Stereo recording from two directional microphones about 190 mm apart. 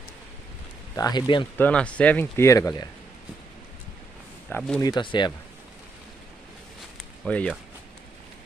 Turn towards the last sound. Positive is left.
turn(degrees=5)  # may be behind; listen again after turning